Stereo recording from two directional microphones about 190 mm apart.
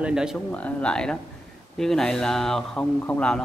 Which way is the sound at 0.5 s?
10° left (ahead or behind).